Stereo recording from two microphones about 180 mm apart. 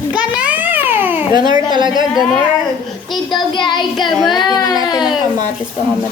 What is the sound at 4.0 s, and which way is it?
Child singing, centre (ahead or behind).